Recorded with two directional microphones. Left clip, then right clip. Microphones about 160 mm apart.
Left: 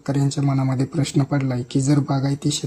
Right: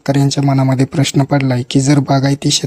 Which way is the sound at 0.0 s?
40° right (ahead or behind).